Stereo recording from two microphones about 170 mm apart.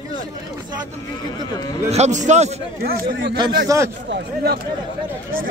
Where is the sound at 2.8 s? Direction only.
65° right (ahead or behind).